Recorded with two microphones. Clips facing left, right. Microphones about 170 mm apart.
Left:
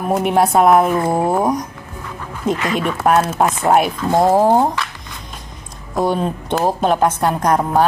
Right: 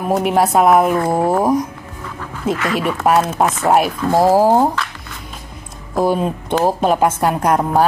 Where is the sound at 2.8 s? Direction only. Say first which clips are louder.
Right 1 dB; centre (ahead or behind).